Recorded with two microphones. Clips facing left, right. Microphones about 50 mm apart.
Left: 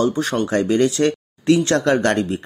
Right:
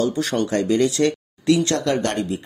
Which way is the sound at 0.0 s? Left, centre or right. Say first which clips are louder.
Left 2 dB; left.